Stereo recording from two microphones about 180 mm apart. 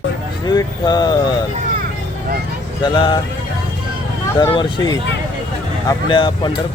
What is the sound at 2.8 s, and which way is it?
Speech, 25° left (ahead or behind).